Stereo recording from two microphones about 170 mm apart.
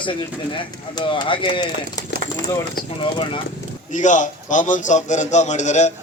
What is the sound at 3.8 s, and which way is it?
A man's voice, 45° left (ahead or behind).